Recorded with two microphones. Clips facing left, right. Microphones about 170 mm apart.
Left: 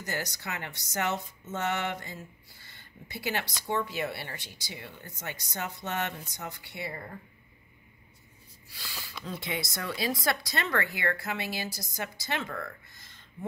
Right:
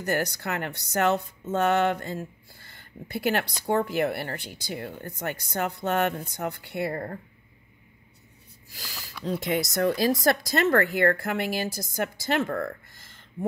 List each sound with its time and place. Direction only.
0.0 s speech: 55° right (ahead or behind)
8.6 s a woman's voice: 40° right (ahead or behind)